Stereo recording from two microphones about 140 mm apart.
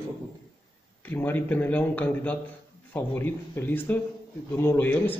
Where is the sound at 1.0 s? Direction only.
15° left (ahead or behind).